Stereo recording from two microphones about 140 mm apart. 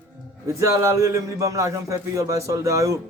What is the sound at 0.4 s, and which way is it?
Speech, 20° right (ahead or behind).